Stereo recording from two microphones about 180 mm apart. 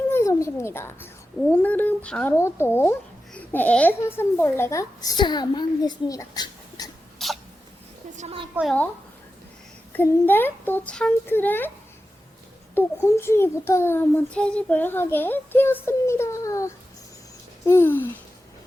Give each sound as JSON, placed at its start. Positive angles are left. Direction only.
{"t": 0.1, "sound": "a child's voice", "side_deg": 15}
{"t": 7.2, "sound": "sneeze", "side_deg": 0}
{"t": 8.1, "sound": "a woman's voice", "side_deg": -40}
{"t": 9.9, "sound": "a child's voice", "side_deg": 10}
{"t": 12.7, "sound": "a child's voice", "side_deg": 15}